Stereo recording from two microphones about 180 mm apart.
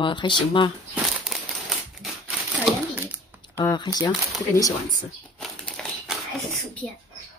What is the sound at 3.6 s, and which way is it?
Speech, 25° left (ahead or behind).